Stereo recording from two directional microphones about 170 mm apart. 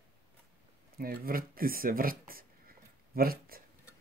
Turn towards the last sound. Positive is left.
turn(degrees=-60)  # may be behind; listen again after turning